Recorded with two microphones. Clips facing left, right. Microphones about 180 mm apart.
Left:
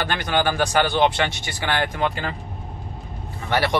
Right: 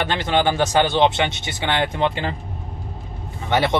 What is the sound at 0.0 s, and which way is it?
Speech, 20° right (ahead or behind).